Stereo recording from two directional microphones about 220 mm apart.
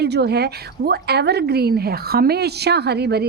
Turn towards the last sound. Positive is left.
turn(degrees=-45)  # may be behind; listen again after turning